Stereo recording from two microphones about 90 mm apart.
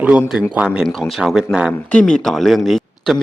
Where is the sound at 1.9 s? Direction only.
5° left (ahead or behind).